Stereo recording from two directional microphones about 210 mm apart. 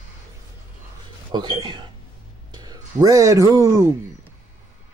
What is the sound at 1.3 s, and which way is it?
Speech, 20° right (ahead or behind).